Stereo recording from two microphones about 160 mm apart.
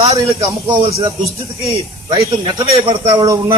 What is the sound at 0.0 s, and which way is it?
A man's voice, 40° right (ahead or behind).